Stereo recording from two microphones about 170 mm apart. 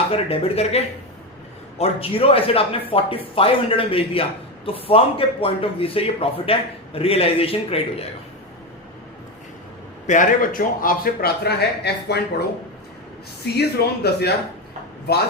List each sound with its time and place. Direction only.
0.1 s a man's voice: 35° left (ahead or behind)
10.1 s a man's voice: 50° left (ahead or behind); by 12.2 s 75° left (ahead or behind)
13.6 s speech: 70° left (ahead or behind)